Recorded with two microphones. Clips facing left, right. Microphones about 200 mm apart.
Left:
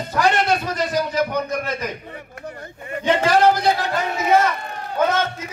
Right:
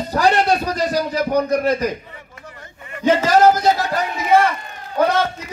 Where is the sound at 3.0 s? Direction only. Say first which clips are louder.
Right 3 dB; 40° right (ahead or behind).